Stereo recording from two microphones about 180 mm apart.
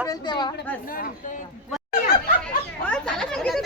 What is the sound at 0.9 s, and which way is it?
Speech, 50° left (ahead or behind).